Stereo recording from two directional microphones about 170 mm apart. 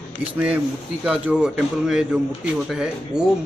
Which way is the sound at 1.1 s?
5° right (ahead or behind).